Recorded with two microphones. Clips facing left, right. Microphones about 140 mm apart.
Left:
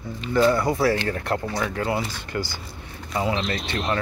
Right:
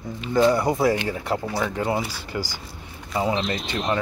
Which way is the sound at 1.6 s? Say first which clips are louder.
Right 1 dB; 20° right (ahead or behind).